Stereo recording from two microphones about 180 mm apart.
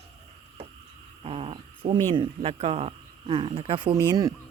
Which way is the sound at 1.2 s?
35° right (ahead or behind).